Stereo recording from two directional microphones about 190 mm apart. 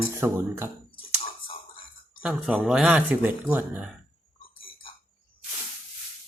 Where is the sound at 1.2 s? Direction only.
30° left (ahead or behind).